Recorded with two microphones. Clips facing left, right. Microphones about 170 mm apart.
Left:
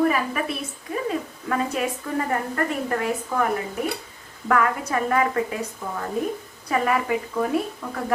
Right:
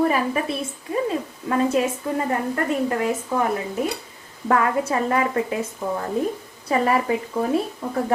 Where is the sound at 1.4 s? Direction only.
30° right (ahead or behind).